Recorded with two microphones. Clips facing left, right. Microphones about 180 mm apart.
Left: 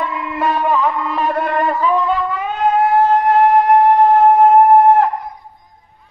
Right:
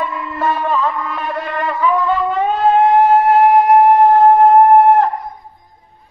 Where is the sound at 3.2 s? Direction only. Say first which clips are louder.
Right 2 dB; 25° right (ahead or behind).